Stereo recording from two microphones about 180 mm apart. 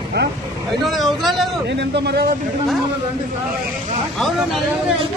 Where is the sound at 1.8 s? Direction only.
65° right (ahead or behind).